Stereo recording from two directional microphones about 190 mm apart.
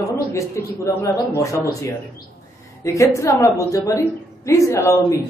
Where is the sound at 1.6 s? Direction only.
15° left (ahead or behind).